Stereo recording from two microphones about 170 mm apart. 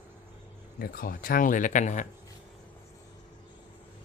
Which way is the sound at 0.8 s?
55° left (ahead or behind).